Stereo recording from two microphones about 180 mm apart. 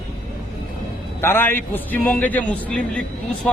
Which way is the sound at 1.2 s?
10° left (ahead or behind).